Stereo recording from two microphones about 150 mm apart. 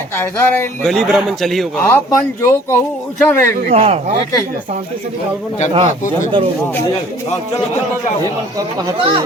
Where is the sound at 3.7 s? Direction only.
45° right (ahead or behind).